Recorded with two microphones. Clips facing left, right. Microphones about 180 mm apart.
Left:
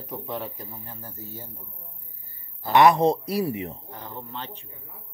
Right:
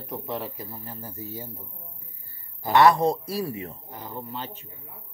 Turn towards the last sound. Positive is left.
turn(degrees=-10)  # may be behind; listen again after turning